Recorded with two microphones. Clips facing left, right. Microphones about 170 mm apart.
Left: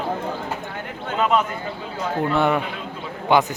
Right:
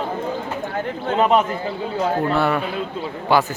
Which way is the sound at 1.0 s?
30° right (ahead or behind).